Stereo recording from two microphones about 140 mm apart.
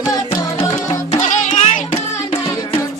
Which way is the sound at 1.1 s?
60° left (ahead or behind).